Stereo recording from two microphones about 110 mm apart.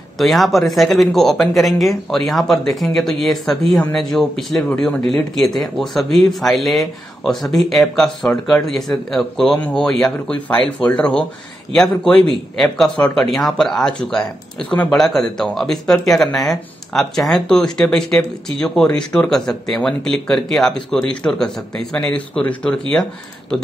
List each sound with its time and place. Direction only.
0.2 s speech: centre (ahead or behind)